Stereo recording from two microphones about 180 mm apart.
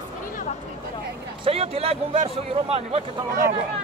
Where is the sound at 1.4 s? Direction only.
35° right (ahead or behind).